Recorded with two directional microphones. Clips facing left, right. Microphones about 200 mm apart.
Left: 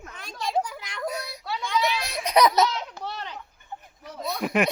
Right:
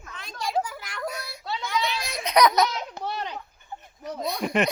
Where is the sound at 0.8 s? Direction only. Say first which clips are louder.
Left 1 dB; 20° left (ahead or behind).